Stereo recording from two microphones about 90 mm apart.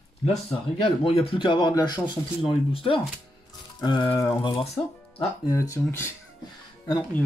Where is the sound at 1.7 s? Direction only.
50° left (ahead or behind).